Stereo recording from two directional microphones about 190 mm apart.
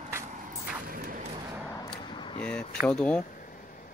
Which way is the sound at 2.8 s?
5° left (ahead or behind).